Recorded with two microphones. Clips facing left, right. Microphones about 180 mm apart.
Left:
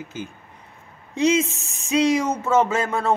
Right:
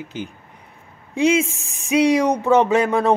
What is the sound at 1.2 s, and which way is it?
Speech, 10° right (ahead or behind).